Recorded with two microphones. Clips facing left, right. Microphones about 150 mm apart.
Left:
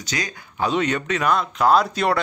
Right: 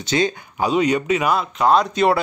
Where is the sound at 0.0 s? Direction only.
25° right (ahead or behind).